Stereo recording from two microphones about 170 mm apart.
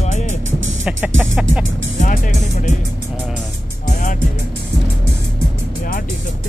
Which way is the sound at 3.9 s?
45° left (ahead or behind).